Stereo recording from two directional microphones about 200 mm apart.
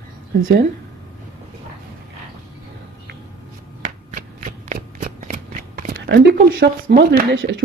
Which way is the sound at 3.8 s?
40° right (ahead or behind).